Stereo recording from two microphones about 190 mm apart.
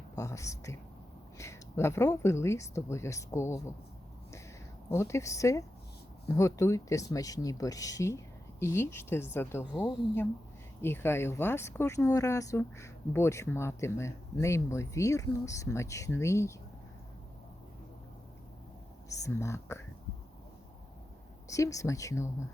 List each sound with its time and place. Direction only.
0.2 s speech: 15° left (ahead or behind)
4.9 s speech: 15° left (ahead or behind)
10.8 s speech: 10° left (ahead or behind)
19.0 s speech: 15° left (ahead or behind)
21.4 s speech: 15° left (ahead or behind)